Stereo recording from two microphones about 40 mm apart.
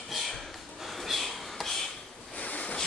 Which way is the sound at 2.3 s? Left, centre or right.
Left.